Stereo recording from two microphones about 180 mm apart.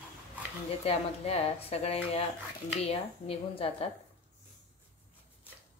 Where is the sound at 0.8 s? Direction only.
35° left (ahead or behind).